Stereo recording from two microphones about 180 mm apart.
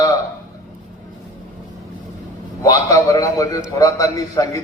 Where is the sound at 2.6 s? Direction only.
20° left (ahead or behind).